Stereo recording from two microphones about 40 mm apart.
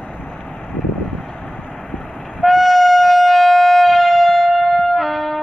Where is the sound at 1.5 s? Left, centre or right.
Left.